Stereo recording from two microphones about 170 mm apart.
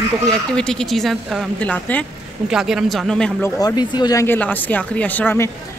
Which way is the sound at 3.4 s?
25° left (ahead or behind).